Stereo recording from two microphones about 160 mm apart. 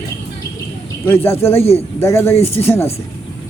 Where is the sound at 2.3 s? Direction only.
40° left (ahead or behind).